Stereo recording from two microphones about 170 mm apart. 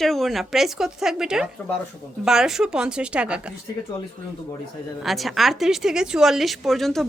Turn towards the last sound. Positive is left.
turn(degrees=0)  # may be behind; listen again after turning